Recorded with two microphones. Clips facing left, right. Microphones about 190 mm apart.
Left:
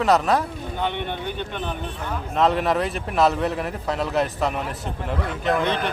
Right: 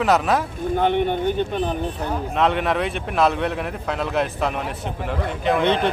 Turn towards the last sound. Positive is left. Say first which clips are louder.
# right 5 dB
turn(degrees=-30)  # may be behind; listen again after turning